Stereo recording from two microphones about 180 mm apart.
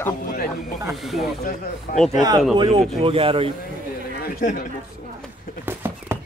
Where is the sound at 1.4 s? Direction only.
55° left (ahead or behind).